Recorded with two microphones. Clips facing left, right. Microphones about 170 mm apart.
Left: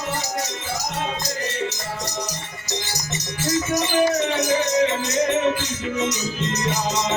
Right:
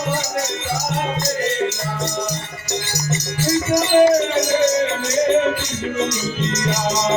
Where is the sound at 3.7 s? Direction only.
90° right.